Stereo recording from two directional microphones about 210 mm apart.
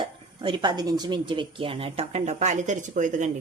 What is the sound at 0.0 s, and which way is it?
Speech, 25° right (ahead or behind).